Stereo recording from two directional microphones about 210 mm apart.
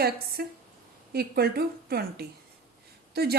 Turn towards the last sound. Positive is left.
turn(degrees=-50)  # may be behind; listen again after turning